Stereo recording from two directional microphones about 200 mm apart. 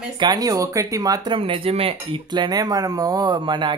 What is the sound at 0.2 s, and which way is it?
Speech, 20° right (ahead or behind).